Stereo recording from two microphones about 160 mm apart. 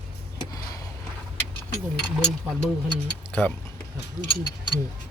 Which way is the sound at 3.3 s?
10° left (ahead or behind).